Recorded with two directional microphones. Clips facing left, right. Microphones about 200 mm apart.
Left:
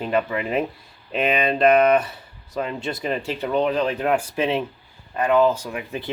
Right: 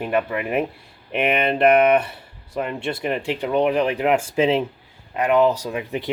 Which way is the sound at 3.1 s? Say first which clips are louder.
Right 1 dB; 15° right (ahead or behind).